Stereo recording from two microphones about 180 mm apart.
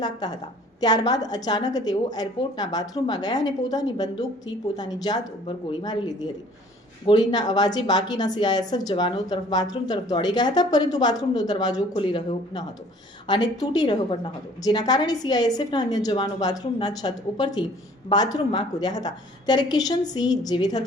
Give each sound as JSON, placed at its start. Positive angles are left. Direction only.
{"t": 0.0, "sound": "a woman's voice", "side_deg": 20}